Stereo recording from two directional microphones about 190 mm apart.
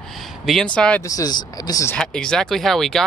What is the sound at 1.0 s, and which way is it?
Speech, 20° left (ahead or behind).